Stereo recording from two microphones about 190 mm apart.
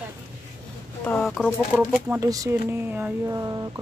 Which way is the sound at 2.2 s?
15° right (ahead or behind).